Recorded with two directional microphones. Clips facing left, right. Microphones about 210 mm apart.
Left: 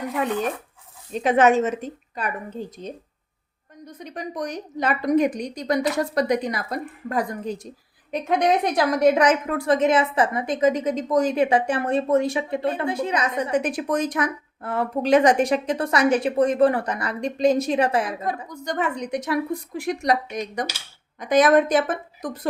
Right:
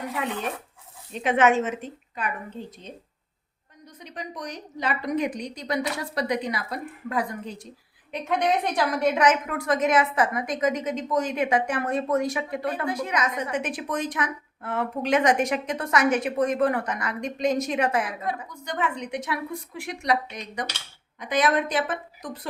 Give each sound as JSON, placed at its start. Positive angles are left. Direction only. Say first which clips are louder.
{"t": 1.1, "sound": "a woman's voice", "louder": "left 3 dB", "side_deg": 40}